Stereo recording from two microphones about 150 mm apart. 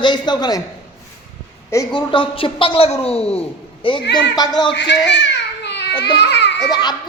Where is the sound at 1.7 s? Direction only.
20° left (ahead or behind).